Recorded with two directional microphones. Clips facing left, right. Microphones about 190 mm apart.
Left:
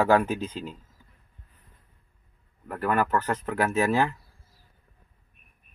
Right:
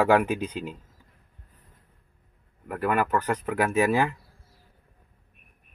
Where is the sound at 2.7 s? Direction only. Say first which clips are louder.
Even; 15° right (ahead or behind).